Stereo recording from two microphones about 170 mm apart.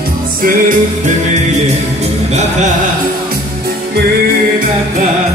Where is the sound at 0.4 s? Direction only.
55° right (ahead or behind).